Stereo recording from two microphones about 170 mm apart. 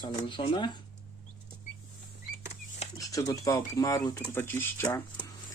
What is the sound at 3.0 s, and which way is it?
Speech, 20° left (ahead or behind).